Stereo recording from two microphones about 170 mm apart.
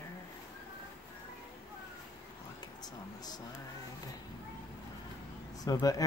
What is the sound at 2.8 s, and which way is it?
Speech, 25° left (ahead or behind).